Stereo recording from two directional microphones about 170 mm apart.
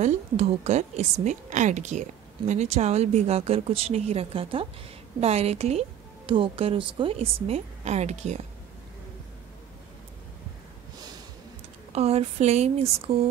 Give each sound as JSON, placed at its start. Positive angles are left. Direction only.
{"t": 0.0, "sound": "a woman's voice", "side_deg": -40}
{"t": 11.9, "sound": "a woman's voice", "side_deg": -35}